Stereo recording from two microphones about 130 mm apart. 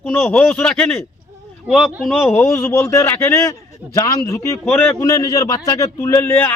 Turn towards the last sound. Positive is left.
turn(degrees=15)  # may be behind; listen again after turning